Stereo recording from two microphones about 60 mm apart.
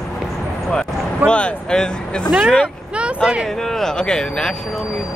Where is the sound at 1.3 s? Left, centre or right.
Centre.